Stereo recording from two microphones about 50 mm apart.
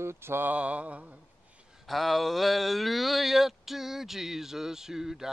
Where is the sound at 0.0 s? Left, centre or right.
Right.